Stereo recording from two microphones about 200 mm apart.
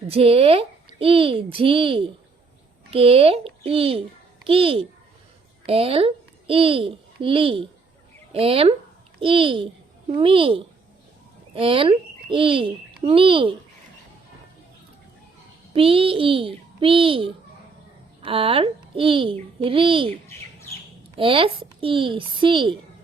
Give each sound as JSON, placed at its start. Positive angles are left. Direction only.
{"t": 0.1, "sound": "a child's voice", "side_deg": -30}
{"t": 15.7, "sound": "a child's voice", "side_deg": -30}
{"t": 21.2, "sound": "a child's voice", "side_deg": -25}